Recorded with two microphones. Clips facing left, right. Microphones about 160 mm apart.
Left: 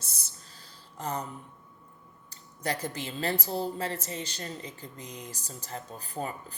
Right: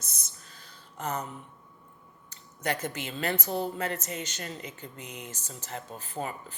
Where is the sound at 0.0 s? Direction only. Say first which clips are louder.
Even; 30° left (ahead or behind).